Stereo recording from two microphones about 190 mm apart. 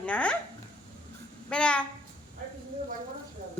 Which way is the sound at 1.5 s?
5° left (ahead or behind).